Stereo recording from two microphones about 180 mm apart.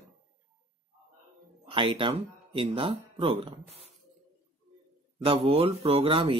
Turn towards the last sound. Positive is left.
turn(degrees=-30)  # may be behind; listen again after turning